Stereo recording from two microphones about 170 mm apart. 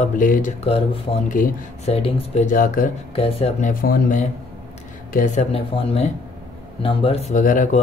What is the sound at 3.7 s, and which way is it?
Speech, 60° left (ahead or behind).